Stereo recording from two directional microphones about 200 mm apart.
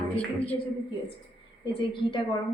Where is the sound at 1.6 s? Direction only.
25° left (ahead or behind).